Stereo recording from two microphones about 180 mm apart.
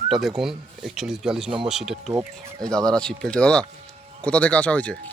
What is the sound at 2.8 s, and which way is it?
Speech, 5° left (ahead or behind).